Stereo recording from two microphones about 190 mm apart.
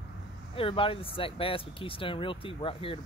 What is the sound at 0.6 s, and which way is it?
Speech, 30° left (ahead or behind).